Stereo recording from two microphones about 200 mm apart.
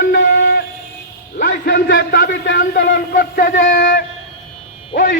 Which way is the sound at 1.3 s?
50° left (ahead or behind).